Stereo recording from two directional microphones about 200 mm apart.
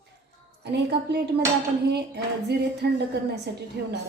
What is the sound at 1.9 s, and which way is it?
A woman's voice, 55° right (ahead or behind).